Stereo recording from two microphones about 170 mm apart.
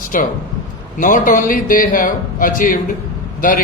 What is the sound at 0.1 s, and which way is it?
A man's voice, 55° left (ahead or behind).